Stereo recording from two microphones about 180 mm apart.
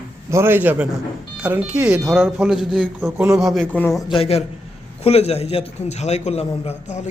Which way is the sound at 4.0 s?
25° left (ahead or behind).